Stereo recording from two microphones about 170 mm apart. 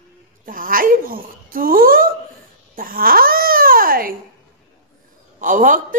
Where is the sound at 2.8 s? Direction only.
60° right (ahead or behind).